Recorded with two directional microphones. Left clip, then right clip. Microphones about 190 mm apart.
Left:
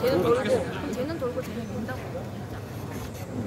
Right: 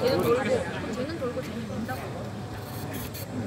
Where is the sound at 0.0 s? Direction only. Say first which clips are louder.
Left 1 dB; 40° left (ahead or behind).